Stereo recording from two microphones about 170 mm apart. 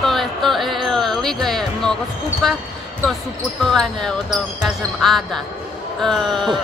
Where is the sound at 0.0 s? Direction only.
Centre (ahead or behind).